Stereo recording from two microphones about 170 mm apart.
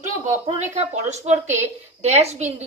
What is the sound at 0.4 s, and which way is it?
A woman's voice, 40° right (ahead or behind).